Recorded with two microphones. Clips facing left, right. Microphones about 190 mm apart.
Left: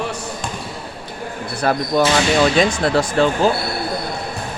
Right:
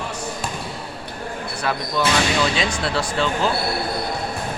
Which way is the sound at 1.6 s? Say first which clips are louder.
Left 7 dB; 45° left (ahead or behind).